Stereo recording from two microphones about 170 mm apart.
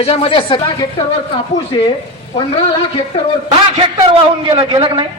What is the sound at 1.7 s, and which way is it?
Speech, 35° left (ahead or behind).